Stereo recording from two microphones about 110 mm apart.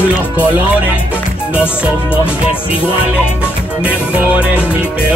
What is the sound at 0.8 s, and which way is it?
Music, 15° right (ahead or behind).